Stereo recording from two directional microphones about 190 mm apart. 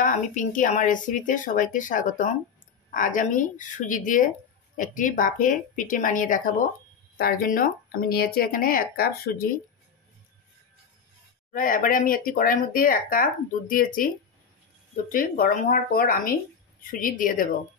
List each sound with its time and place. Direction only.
0.0 s a woman's voice: 45° left (ahead or behind)
11.5 s speech: 45° left (ahead or behind)